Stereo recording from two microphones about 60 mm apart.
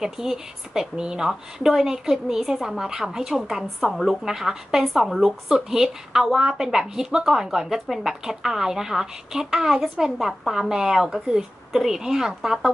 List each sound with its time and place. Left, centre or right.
0.0 s speech: centre